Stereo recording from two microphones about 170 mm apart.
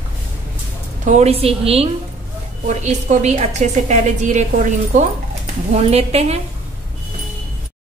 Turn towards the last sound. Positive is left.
turn(degrees=-40)  # may be behind; listen again after turning